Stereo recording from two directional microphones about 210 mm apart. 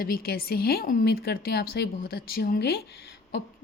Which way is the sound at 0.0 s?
45° left (ahead or behind).